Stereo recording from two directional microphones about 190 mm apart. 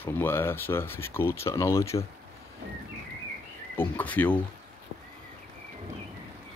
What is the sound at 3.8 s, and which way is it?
Speech, 10° left (ahead or behind).